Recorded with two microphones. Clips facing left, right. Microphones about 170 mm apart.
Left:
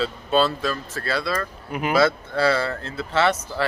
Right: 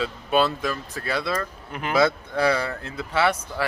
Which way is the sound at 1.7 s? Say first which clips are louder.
Left 3 dB; 10° left (ahead or behind).